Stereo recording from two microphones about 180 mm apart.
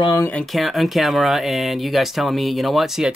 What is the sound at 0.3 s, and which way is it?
Speech, 5° left (ahead or behind).